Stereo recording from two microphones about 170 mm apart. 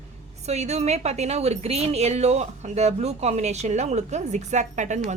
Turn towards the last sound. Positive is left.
turn(degrees=-45)  # may be behind; listen again after turning